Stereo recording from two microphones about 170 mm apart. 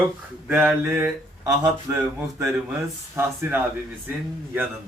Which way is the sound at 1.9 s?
15° right (ahead or behind).